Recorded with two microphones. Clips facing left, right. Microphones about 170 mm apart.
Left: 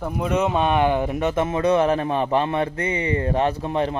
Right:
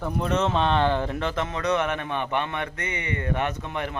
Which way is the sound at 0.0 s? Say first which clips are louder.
Left 3 dB; 10° left (ahead or behind).